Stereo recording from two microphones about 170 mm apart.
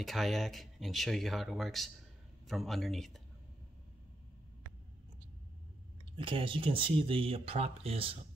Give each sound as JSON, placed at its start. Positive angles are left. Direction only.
{"t": 0.0, "sound": "speech", "side_deg": 0}
{"t": 6.1, "sound": "speech", "side_deg": -30}